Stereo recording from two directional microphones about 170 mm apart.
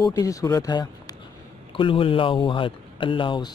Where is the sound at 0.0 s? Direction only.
20° left (ahead or behind).